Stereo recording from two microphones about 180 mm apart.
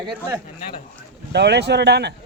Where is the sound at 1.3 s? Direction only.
70° right (ahead or behind).